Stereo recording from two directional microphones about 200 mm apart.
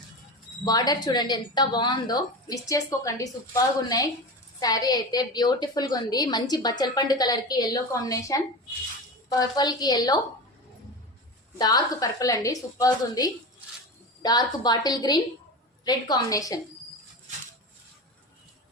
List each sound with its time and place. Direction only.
0.6 s a woman's voice: 20° left (ahead or behind)
11.5 s a woman's voice: 20° left (ahead or behind)